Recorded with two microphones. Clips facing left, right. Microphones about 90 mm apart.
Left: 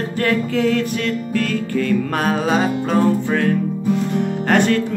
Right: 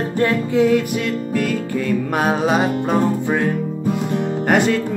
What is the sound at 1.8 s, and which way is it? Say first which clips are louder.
Music: right 2 dB; 15° right (ahead or behind).